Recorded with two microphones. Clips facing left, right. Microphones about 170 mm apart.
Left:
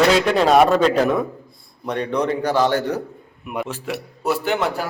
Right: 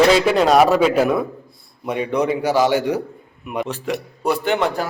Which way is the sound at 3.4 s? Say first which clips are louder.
Right 2 dB; centre (ahead or behind).